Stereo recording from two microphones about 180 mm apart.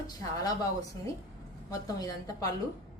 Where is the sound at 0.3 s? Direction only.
20° left (ahead or behind).